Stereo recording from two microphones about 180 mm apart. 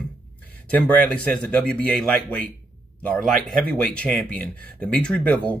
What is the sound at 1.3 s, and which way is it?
Speech, 5° left (ahead or behind).